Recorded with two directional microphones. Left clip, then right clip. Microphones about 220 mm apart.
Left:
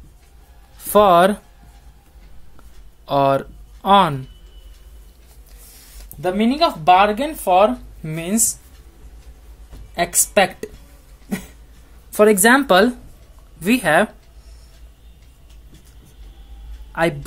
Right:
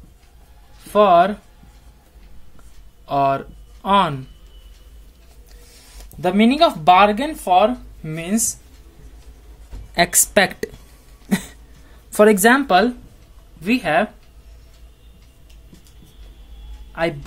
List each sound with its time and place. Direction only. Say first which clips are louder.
0.8 s speech: left 1 dB; 30° left (ahead or behind)
3.1 s speech: left 2 dB; 20° left (ahead or behind)
6.2 s a woman's voice: right 2 dB; 25° right (ahead or behind)
6.9 s speech: even; 5° right (ahead or behind); by 8.4 s 15° left (ahead or behind)
9.9 s a woman's voice: right 1 dB; 20° right (ahead or behind)
11.2 s a sound: right 5 dB; 25° right (ahead or behind)
12.1 s speech: even; 15° right (ahead or behind)
12.4 s speech: left 1 dB; 5° left (ahead or behind)
12.6 s speech: left 2 dB; 25° left (ahead or behind)
16.9 s speech: left 3 dB; 25° left (ahead or behind)